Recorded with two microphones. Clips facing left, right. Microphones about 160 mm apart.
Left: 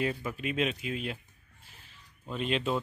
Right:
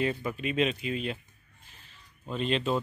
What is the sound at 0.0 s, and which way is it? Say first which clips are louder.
A man's voice: right 2 dB; 5° left (ahead or behind).